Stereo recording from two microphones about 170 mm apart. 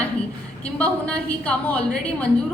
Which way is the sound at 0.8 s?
5° left (ahead or behind).